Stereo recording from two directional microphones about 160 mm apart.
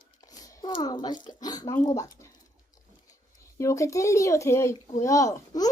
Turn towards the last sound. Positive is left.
turn(degrees=20)  # may be behind; listen again after turning